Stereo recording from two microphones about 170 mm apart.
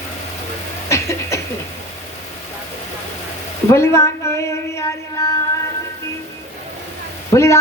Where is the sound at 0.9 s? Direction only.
15° left (ahead or behind).